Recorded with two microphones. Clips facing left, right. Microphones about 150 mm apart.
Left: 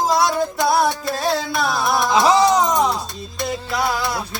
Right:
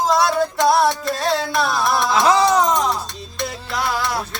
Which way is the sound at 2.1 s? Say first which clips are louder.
Left 2 dB; 20° left (ahead or behind).